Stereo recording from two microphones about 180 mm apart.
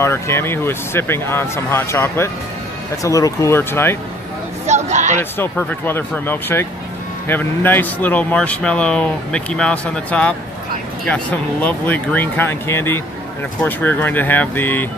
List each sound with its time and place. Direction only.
0.0 s speech: 15° left (ahead or behind)
4.6 s speech: 40° right (ahead or behind)
5.4 s speech: 10° left (ahead or behind)